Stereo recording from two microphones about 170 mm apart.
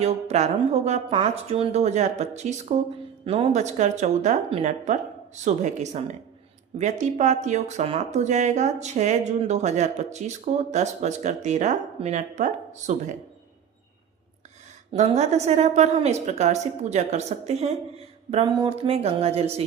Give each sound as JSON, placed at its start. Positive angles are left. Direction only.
{"t": 0.0, "sound": "a woman's voice", "side_deg": -40}
{"t": 14.9, "sound": "a woman's voice", "side_deg": -40}